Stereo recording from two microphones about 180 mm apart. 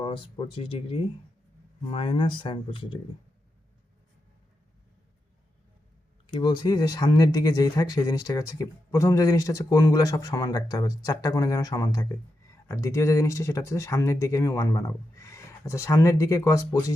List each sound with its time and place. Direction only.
0.0 s speech: 30° left (ahead or behind)
6.2 s speech: 25° left (ahead or behind)